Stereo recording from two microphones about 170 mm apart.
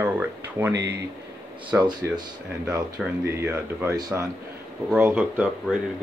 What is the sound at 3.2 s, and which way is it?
Speech, 15° right (ahead or behind).